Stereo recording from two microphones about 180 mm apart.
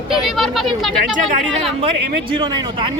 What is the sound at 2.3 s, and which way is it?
Speech, 30° right (ahead or behind).